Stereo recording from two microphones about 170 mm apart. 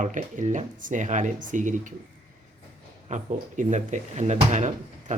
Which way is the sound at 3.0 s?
45° right (ahead or behind).